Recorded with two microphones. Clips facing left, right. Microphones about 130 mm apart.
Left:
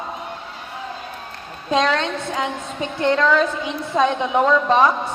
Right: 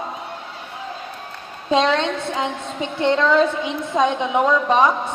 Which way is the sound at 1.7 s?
25° right (ahead or behind).